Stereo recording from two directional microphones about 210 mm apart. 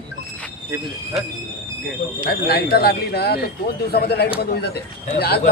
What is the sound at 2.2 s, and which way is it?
Speech, 45° left (ahead or behind).